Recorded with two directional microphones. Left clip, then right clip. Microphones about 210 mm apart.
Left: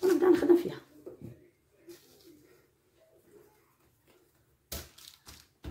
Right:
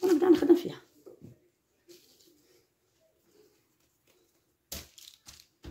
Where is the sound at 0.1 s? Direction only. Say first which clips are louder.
Right 1 dB; 50° right (ahead or behind).